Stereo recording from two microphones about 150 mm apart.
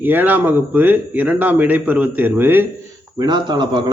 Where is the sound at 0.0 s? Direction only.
15° right (ahead or behind).